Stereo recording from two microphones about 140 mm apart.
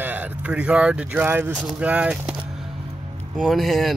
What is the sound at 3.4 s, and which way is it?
Speech, centre (ahead or behind).